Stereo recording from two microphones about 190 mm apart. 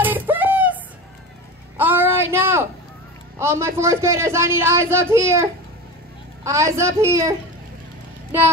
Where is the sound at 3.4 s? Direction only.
15° right (ahead or behind).